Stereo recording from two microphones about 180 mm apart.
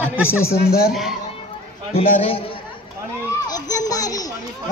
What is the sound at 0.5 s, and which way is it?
Speech, 60° left (ahead or behind).